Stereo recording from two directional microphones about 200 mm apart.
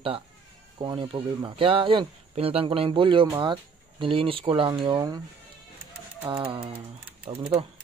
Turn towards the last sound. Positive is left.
turn(degrees=-25)  # may be behind; listen again after turning